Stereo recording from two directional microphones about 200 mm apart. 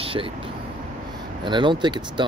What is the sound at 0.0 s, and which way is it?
Vehicle, 25° right (ahead or behind).